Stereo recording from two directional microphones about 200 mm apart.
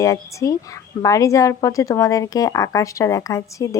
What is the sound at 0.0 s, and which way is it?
Speech, 15° left (ahead or behind).